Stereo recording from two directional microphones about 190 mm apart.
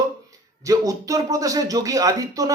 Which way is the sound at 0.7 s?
20° right (ahead or behind).